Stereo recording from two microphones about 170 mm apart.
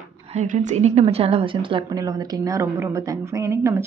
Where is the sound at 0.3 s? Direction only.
45° right (ahead or behind).